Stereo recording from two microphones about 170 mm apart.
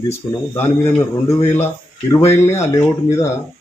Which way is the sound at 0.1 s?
15° left (ahead or behind).